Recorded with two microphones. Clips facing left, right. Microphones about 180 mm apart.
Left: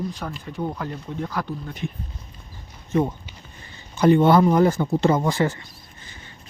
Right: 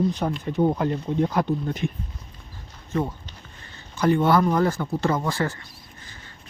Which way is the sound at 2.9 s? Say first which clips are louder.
Left 4 dB; 20° left (ahead or behind).